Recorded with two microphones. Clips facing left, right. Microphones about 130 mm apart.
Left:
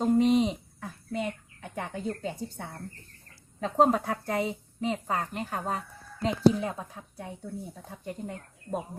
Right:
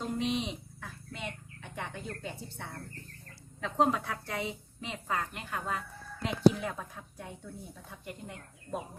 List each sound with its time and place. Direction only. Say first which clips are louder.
0.0 s bird: left 10 dB; 40° left (ahead or behind)
3.6 s speech: left 5 dB; 40° left (ahead or behind)